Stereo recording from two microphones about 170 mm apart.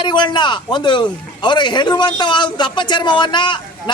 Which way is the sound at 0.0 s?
25° left (ahead or behind).